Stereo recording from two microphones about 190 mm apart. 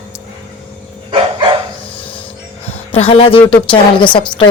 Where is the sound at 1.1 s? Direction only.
25° right (ahead or behind).